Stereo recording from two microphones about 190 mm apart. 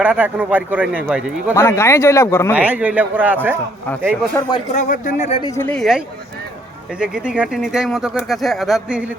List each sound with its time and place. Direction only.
0.0 s speech: 10° right (ahead or behind)
1.5 s speech: 15° left (ahead or behind)
2.5 s speech: 10° right (ahead or behind)
4.4 s speech: 20° left (ahead or behind)
4.7 s speech: 40° left (ahead or behind)
5.4 s speech: 15° left (ahead or behind)
7.0 s speech: 5° right (ahead or behind)